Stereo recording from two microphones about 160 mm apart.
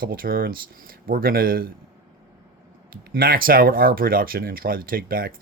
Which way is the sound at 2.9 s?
65° right (ahead or behind).